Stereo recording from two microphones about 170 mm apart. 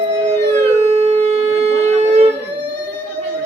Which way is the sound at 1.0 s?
35° right (ahead or behind).